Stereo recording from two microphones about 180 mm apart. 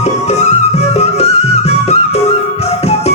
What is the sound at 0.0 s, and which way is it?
Music, 40° left (ahead or behind).